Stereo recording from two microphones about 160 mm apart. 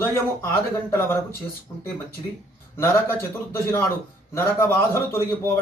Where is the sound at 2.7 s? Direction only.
15° left (ahead or behind).